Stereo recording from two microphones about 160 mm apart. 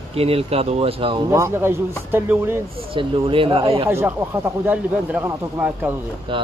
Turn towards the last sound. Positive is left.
turn(degrees=-10)  # may be behind; listen again after turning